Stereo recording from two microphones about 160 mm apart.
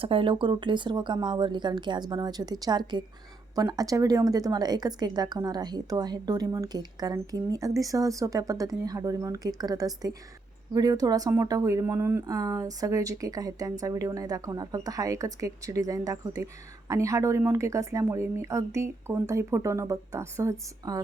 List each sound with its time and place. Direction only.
0.0 s speech: 35° right (ahead or behind)